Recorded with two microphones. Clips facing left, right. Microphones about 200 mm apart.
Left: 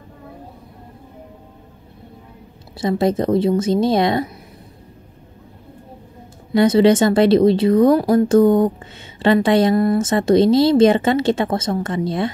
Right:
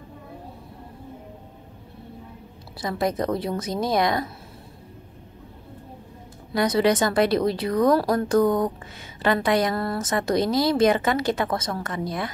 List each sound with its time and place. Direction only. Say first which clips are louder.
2.8 s speech: left 7 dB; 25° left (ahead or behind)
6.5 s speech: left 8 dB; 25° left (ahead or behind)